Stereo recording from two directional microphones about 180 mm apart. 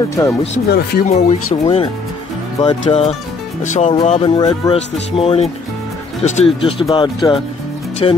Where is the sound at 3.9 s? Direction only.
30° left (ahead or behind).